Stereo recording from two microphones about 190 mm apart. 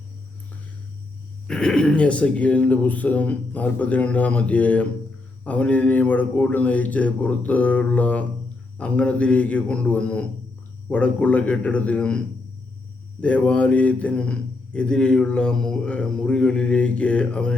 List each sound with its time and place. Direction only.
1.5 s speech: 5° left (ahead or behind)
13.2 s speech: 5° left (ahead or behind)